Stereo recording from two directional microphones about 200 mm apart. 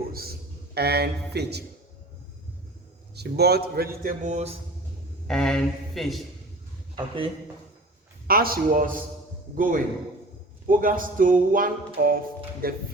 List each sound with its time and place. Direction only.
0.1 s a man's voice: 50° right (ahead or behind)
3.2 s music: 55° right (ahead or behind); by 4.5 s 35° right (ahead or behind)
5.3 s speech: 5° left (ahead or behind)
8.3 s music: 50° right (ahead or behind)